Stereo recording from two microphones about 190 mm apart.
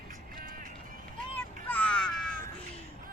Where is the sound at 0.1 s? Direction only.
45° right (ahead or behind).